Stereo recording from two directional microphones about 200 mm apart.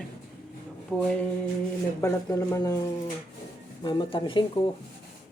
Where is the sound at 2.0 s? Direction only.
15° left (ahead or behind).